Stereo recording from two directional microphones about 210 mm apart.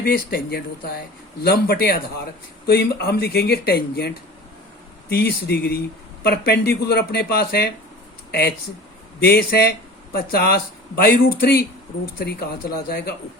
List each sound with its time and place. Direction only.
0.0 s speech: 45° left (ahead or behind)